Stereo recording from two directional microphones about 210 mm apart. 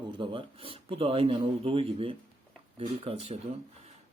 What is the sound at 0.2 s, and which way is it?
A man's voice, 25° right (ahead or behind).